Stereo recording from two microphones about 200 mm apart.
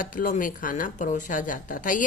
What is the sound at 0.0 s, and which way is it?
A woman's voice, 45° left (ahead or behind).